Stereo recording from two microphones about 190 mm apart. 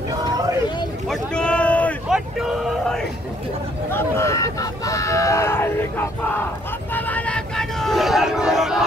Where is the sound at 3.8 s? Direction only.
15° left (ahead or behind).